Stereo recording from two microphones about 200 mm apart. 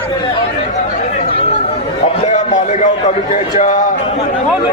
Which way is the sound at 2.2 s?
35° left (ahead or behind).